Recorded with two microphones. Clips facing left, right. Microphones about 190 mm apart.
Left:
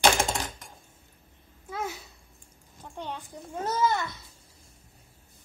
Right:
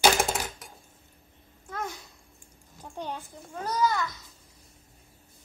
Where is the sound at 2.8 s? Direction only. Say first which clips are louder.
Right 1 dB; 10° right (ahead or behind).